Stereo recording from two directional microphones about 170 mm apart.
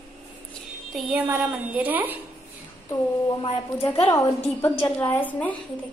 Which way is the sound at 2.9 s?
25° left (ahead or behind).